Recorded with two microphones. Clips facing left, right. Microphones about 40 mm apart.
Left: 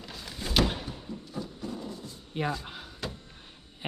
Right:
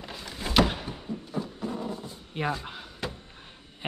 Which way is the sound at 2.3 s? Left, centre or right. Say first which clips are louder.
Right 1 dB; centre.